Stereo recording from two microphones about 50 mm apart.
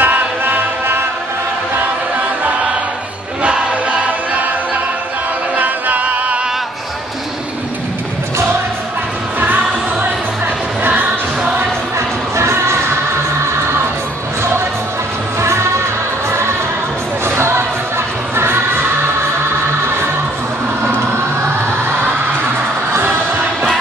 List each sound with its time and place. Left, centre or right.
0.0 s music: right
3.4 s choir: right
5.6 s music: right
10.8 s music: right
12.4 s music: right
15.4 s music: right